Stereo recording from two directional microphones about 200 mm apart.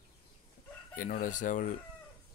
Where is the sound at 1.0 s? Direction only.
40° left (ahead or behind).